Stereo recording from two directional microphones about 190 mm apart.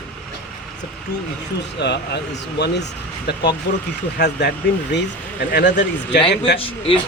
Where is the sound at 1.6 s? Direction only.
65° left (ahead or behind).